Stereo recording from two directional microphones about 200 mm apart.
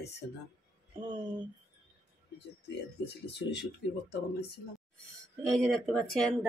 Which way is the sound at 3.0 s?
60° left (ahead or behind).